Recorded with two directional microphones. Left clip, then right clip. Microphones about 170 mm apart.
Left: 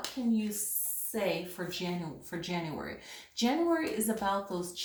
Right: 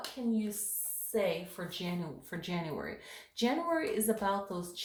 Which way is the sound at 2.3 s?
45° right (ahead or behind).